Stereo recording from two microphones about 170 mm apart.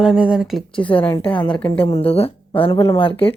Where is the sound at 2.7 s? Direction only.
20° left (ahead or behind).